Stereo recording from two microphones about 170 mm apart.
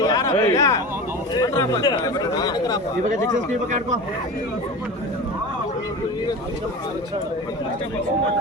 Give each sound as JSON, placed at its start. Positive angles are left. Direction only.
{"t": 0.0, "sound": "speech", "side_deg": 20}